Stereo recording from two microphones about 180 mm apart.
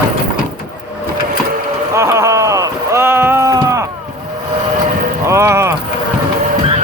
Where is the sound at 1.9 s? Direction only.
15° right (ahead or behind).